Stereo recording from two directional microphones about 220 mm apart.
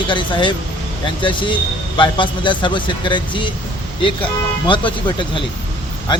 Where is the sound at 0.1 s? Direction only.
20° left (ahead or behind).